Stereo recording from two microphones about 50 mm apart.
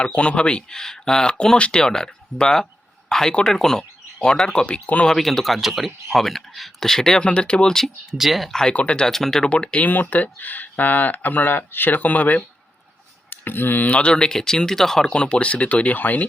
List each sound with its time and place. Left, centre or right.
0.0 s speech: left
5.0 s speech: centre
7.2 s speech: left
8.2 s speech: centre
8.7 s speech: left
9.0 s speech: centre
9.4 s speech: left; by 15.1 s centre
15.1 s speech: centre
16.0 s speech: left